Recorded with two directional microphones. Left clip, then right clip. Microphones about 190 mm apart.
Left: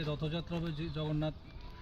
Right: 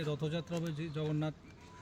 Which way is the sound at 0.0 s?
20° right (ahead or behind).